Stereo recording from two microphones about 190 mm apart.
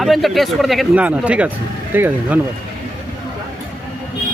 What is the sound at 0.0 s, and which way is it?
Speech, centre (ahead or behind).